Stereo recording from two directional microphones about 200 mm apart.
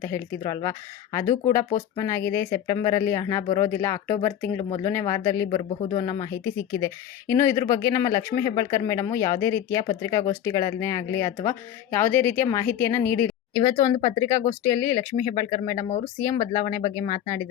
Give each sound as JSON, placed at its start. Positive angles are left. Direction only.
{"t": 0.0, "sound": "speech", "side_deg": 15}
{"t": 1.2, "sound": "speech", "side_deg": 35}
{"t": 2.0, "sound": "speech", "side_deg": 15}
{"t": 4.5, "sound": "speech", "side_deg": 30}
{"t": 4.9, "sound": "speech", "side_deg": 10}
{"t": 5.5, "sound": "speech", "side_deg": 30}
{"t": 6.1, "sound": "speech", "side_deg": 15}
{"t": 16.4, "sound": "speech", "side_deg": 35}
{"t": 16.7, "sound": "speech", "side_deg": 15}